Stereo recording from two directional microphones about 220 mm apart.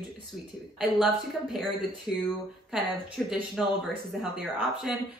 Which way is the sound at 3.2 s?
Centre (ahead or behind).